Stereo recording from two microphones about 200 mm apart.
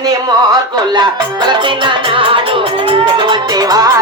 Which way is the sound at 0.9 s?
20° right (ahead or behind).